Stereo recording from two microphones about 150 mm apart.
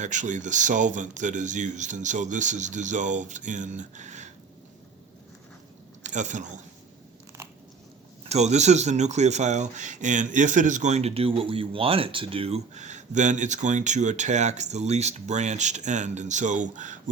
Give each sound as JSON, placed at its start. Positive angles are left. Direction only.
{"t": 0.0, "sound": "speech", "side_deg": -55}
{"t": 6.0, "sound": "speech", "side_deg": -55}
{"t": 8.2, "sound": "speech", "side_deg": -45}